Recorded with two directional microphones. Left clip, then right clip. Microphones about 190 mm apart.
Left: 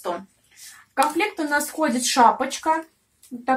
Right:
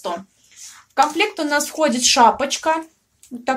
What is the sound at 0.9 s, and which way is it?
A woman's voice, 60° right (ahead or behind).